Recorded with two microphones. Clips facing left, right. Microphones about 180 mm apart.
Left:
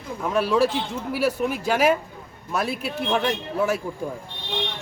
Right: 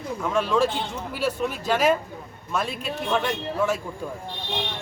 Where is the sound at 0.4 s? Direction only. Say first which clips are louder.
Left 2 dB; 10° left (ahead or behind).